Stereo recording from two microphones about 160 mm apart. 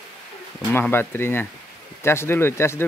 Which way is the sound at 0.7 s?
15° left (ahead or behind).